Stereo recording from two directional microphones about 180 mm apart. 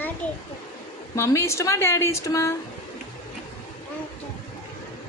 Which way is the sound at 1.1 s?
15° left (ahead or behind).